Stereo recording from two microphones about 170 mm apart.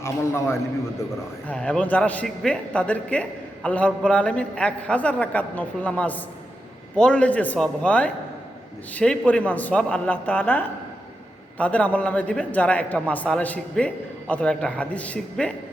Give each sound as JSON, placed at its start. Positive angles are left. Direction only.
{"t": 0.0, "sound": "a man's voice", "side_deg": 15}
{"t": 1.5, "sound": "a man's voice", "side_deg": 5}